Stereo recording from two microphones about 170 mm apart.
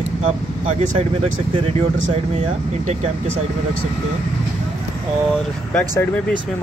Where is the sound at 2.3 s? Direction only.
40° right (ahead or behind).